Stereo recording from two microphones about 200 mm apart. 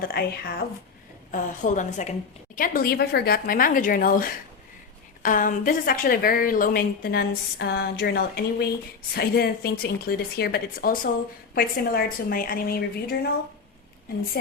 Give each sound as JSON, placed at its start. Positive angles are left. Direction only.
{"t": 0.1, "sound": "a woman's voice", "side_deg": 50}
{"t": 1.3, "sound": "a woman's voice", "side_deg": 40}